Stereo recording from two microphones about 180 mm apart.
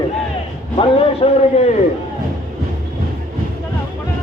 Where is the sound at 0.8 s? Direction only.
35° left (ahead or behind).